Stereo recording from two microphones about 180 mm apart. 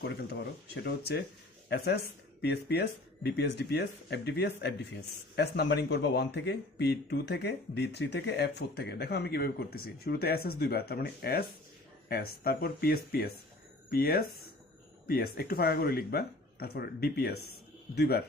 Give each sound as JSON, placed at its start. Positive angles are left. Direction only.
{"t": 0.0, "sound": "speech", "side_deg": 65}